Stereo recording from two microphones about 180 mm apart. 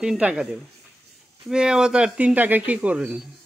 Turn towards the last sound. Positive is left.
turn(degrees=-5)  # may be behind; listen again after turning